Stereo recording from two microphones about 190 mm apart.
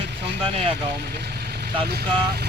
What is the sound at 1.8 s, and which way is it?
Speech, 55° right (ahead or behind).